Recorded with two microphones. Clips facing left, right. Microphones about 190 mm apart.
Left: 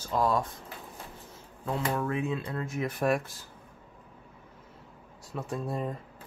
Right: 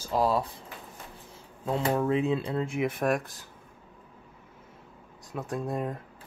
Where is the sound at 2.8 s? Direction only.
Centre (ahead or behind).